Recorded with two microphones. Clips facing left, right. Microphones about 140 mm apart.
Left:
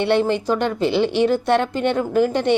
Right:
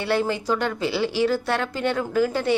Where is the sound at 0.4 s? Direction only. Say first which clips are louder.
Left 4 dB; 15° left (ahead or behind).